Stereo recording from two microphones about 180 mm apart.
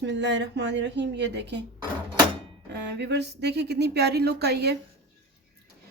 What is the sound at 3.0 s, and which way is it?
Speech, 70° right (ahead or behind).